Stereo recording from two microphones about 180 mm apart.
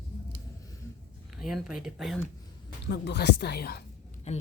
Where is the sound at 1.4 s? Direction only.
Centre (ahead or behind).